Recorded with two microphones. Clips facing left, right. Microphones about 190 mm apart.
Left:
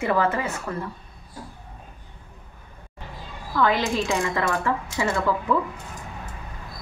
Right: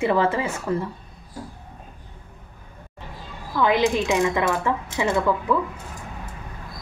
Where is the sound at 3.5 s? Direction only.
15° right (ahead or behind).